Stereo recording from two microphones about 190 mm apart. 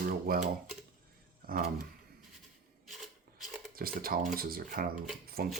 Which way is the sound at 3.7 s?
50° right (ahead or behind).